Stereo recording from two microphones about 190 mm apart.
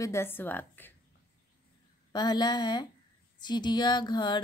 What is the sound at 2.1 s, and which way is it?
Speech, 20° left (ahead or behind).